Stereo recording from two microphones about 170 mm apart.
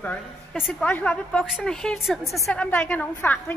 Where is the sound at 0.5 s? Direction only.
5° right (ahead or behind).